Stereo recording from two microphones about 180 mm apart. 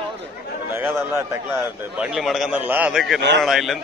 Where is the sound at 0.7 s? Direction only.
15° right (ahead or behind).